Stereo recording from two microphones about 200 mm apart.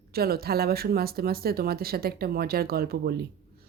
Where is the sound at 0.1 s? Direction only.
50° right (ahead or behind).